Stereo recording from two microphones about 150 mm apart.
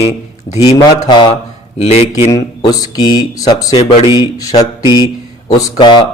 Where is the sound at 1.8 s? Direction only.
45° left (ahead or behind).